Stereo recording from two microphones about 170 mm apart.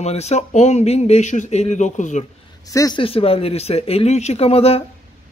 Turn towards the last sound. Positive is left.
turn(degrees=35)  # may be behind; listen again after turning